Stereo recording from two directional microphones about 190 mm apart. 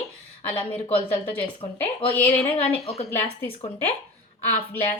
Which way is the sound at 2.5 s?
30° left (ahead or behind).